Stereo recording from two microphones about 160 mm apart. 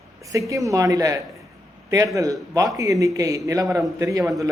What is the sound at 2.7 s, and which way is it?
A man's voice, 20° right (ahead or behind).